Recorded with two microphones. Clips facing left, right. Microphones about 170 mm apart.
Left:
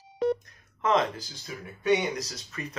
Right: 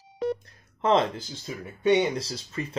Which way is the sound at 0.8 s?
30° right (ahead or behind).